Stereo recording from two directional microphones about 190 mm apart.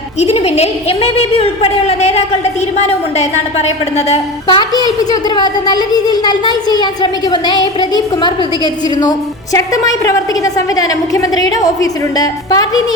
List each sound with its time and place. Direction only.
0.2 s a woman's voice: 35° left (ahead or behind)
4.4 s speech: 25° left (ahead or behind)